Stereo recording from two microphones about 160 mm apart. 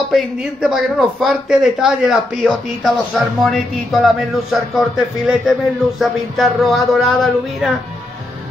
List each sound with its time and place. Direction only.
0.1 s speech: 5° right (ahead or behind)